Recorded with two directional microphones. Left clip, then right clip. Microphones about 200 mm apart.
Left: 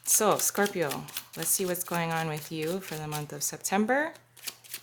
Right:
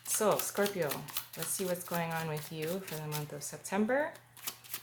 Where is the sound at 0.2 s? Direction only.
50° left (ahead or behind).